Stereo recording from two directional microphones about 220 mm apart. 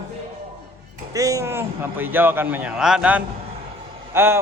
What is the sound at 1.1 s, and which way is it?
Speech, 15° right (ahead or behind).